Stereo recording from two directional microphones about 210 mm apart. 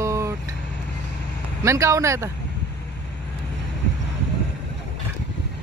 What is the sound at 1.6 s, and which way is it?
Speech, 15° right (ahead or behind).